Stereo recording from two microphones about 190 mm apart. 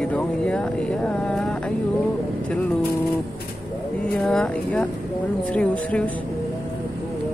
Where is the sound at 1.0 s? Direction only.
5° left (ahead or behind).